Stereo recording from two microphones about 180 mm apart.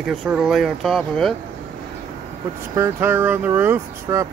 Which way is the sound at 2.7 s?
15° right (ahead or behind).